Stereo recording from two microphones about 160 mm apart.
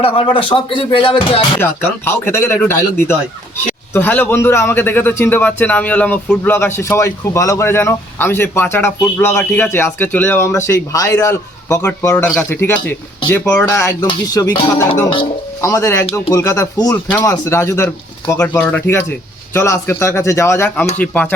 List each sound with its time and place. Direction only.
0.0 s speech: 35° left (ahead or behind)
1.6 s a man's voice: 15° left (ahead or behind)
13.7 s music: 20° left (ahead or behind)
17.2 s a man's voice: 20° left (ahead or behind)